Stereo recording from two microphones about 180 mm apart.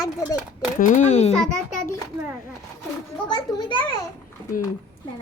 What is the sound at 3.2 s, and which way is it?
Speech, 25° left (ahead or behind).